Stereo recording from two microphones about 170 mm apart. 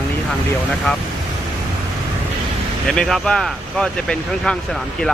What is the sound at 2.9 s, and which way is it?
Speech, centre (ahead or behind).